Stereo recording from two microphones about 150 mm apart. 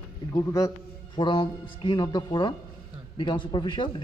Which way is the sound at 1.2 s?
35° left (ahead or behind).